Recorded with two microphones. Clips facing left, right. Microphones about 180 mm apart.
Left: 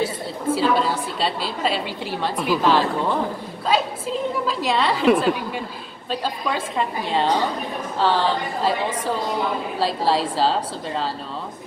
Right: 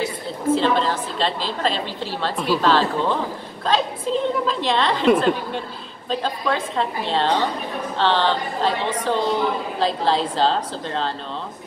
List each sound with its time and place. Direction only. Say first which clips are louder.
0.6 s a woman's voice: even; 10° left (ahead or behind)